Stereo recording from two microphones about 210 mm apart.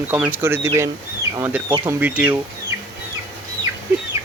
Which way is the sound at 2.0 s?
5° right (ahead or behind).